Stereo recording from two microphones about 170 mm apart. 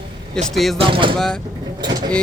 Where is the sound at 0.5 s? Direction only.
Centre (ahead or behind).